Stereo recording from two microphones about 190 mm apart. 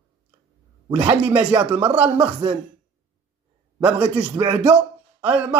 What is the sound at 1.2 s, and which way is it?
Speech, 10° right (ahead or behind).